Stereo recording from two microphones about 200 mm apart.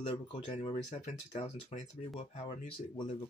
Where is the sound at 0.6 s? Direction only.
35° left (ahead or behind).